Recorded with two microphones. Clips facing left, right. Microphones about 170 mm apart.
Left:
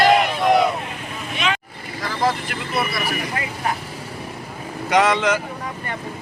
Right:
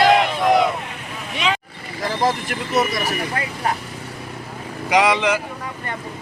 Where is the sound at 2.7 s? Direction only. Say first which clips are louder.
Right 3 dB; 40° right (ahead or behind).